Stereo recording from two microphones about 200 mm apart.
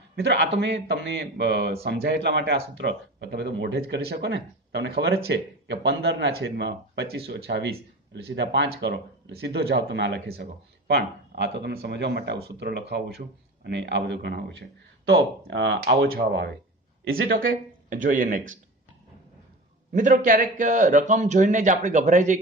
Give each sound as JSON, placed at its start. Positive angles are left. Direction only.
{"t": 0.1, "sound": "a man's voice", "side_deg": -55}
{"t": 17.5, "sound": "speech", "side_deg": -40}
{"t": 19.9, "sound": "a man's voice", "side_deg": -40}